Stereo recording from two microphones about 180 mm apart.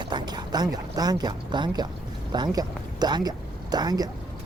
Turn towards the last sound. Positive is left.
turn(degrees=-20)  # may be behind; listen again after turning